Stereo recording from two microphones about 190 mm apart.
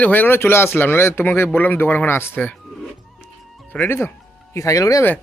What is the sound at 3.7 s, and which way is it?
Speech, 10° left (ahead or behind).